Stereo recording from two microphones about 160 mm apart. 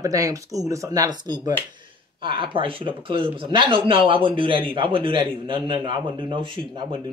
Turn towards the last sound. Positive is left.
turn(degrees=-30)  # may be behind; listen again after turning